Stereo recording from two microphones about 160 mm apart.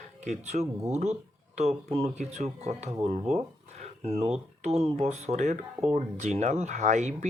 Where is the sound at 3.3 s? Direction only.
45° right (ahead or behind).